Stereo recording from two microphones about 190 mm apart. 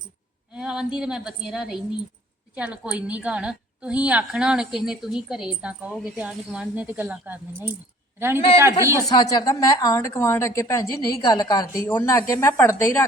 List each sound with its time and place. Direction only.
0.5 s a sound: 5° right (ahead or behind)
0.9 s a woman's voice: 5° right (ahead or behind)
9.0 s a woman's voice: 20° left (ahead or behind)